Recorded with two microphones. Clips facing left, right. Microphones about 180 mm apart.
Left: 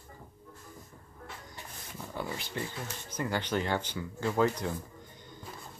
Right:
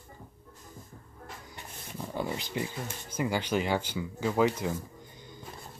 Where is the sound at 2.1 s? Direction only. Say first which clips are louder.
Right 4 dB; 20° right (ahead or behind).